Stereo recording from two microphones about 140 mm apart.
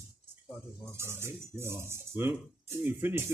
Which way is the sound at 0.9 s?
20° right (ahead or behind).